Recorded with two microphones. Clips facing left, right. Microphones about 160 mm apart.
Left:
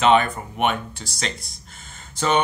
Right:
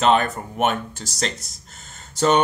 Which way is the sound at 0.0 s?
40° right (ahead or behind).